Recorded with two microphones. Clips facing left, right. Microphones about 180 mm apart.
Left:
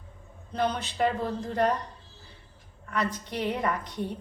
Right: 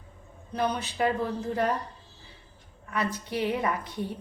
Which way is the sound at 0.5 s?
10° right (ahead or behind).